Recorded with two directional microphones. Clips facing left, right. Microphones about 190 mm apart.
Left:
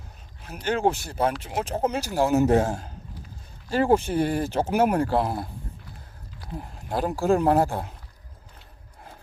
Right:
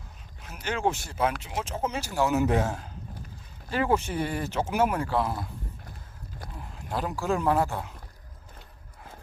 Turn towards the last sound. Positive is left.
turn(degrees=40)  # may be behind; listen again after turning